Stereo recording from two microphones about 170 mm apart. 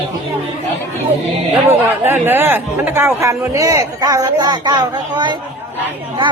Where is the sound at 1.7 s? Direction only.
15° right (ahead or behind).